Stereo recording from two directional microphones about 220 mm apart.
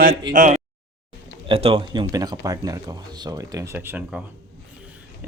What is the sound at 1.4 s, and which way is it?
Speech, 25° right (ahead or behind).